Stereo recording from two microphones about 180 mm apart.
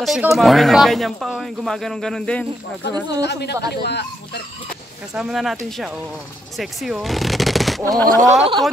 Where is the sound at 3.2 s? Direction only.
70° left (ahead or behind).